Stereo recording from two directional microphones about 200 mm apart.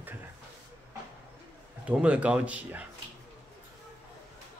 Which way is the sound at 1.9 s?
5° right (ahead or behind).